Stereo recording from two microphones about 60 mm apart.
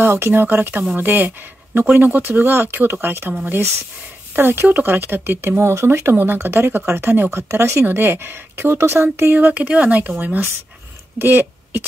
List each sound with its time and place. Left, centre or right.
0.0 s speech: right
4.4 s speech: right
7.3 s speech: right
7.8 s speech: right
9.3 s speech: right